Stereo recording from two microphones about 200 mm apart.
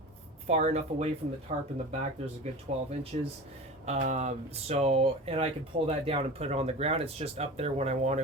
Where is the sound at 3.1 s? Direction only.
35° right (ahead or behind).